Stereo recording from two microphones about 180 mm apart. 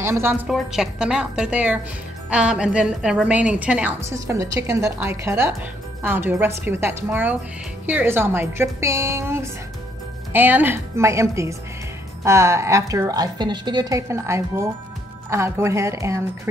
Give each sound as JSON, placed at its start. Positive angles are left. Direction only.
{"t": 0.0, "sound": "a woman's voice", "side_deg": -15}
{"t": 0.5, "sound": "a woman's voice", "side_deg": 0}